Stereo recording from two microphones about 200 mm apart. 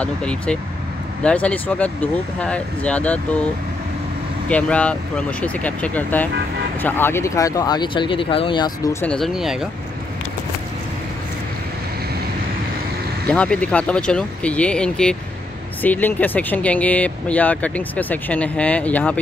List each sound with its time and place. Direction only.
0.0 s speech: 5° left (ahead or behind)
4.5 s speech: 5° left (ahead or behind)
9.0 s speech: 5° left (ahead or behind)
13.3 s speech: 5° left (ahead or behind)